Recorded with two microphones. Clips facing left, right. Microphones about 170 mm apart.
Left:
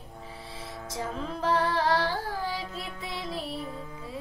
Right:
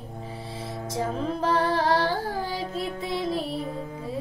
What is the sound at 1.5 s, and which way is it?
Singing, 30° right (ahead or behind).